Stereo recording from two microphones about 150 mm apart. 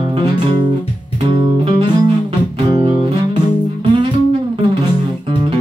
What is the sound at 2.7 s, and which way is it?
Music, 40° right (ahead or behind).